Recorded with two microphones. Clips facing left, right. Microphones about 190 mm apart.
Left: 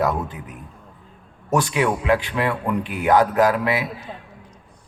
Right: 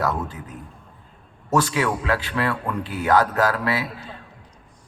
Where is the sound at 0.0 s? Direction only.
20° left (ahead or behind).